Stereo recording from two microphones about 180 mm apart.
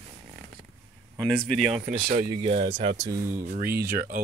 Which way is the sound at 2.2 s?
30° right (ahead or behind).